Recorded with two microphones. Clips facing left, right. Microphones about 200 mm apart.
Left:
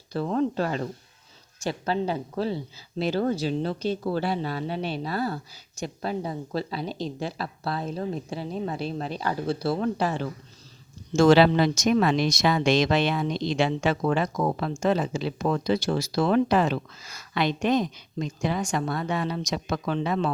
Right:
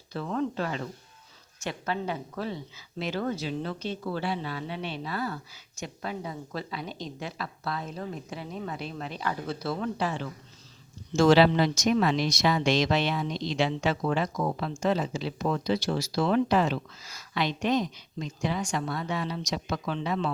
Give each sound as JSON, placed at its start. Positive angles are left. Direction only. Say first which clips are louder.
{"t": 0.1, "sound": "a woman's voice", "louder": "left 5 dB", "side_deg": 35}
{"t": 11.1, "sound": "speech", "louder": "left 3 dB", "side_deg": 50}